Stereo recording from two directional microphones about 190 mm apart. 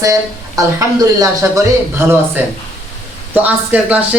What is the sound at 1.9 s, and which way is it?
Speech, 10° right (ahead or behind).